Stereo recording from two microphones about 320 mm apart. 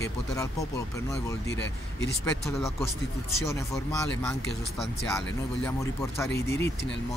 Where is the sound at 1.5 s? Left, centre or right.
Left.